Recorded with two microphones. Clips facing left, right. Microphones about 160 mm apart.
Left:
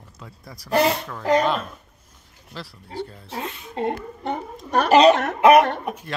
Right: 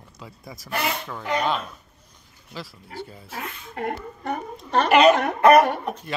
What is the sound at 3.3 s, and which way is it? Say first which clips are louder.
A woman's voice: left 4 dB; 20° left (ahead or behind).